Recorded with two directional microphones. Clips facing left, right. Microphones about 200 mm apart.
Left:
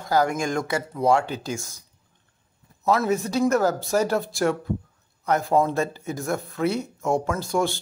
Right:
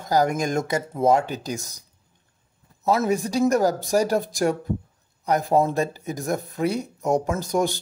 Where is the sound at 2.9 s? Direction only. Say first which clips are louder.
Even; 15° right (ahead or behind).